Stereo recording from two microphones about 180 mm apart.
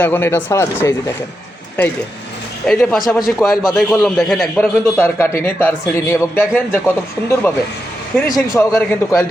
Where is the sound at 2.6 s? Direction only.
5° left (ahead or behind).